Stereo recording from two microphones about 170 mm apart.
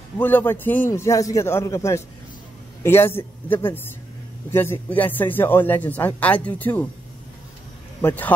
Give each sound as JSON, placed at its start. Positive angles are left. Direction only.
{"t": 0.2, "sound": "a man's voice", "side_deg": 10}
{"t": 8.0, "sound": "a man's voice", "side_deg": 10}